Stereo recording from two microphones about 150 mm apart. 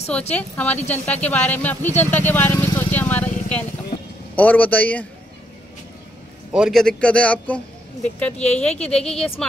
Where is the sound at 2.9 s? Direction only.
10° left (ahead or behind).